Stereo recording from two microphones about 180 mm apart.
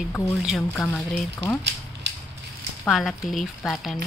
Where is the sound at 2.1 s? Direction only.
75° right (ahead or behind).